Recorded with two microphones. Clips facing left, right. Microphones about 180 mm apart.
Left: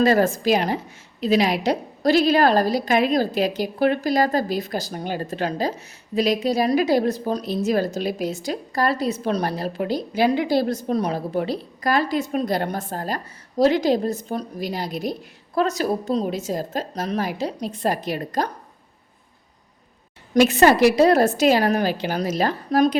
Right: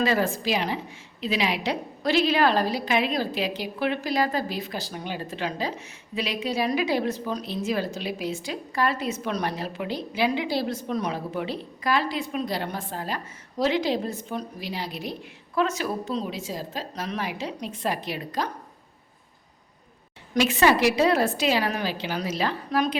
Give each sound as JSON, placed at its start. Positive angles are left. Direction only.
{"t": 0.0, "sound": "a woman's voice", "side_deg": 45}
{"t": 20.3, "sound": "a woman's voice", "side_deg": 40}